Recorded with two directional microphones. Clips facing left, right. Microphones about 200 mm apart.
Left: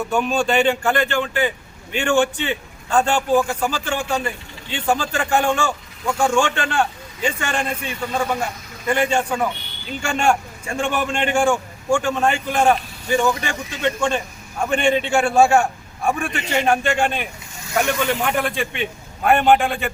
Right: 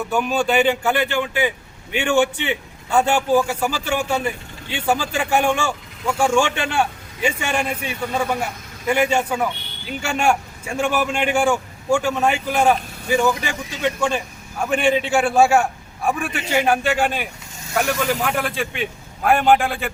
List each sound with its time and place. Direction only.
0.1 s a man's voice: 5° right (ahead or behind)